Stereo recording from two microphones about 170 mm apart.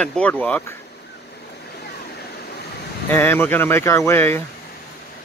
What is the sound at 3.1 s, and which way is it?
Speech, 10° left (ahead or behind).